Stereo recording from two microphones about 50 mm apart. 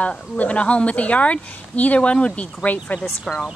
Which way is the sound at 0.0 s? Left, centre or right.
Left.